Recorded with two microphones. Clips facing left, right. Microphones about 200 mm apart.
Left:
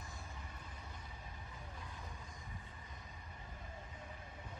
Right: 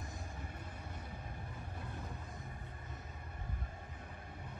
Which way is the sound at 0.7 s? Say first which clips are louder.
Right 5 dB; 60° right (ahead or behind).